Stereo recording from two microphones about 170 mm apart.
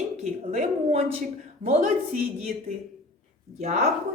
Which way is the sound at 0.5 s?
40° right (ahead or behind).